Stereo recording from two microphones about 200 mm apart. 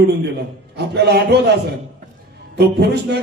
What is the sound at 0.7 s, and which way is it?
Speech, 55° right (ahead or behind).